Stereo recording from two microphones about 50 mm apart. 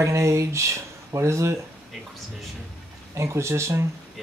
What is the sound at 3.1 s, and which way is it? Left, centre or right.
Speech, right.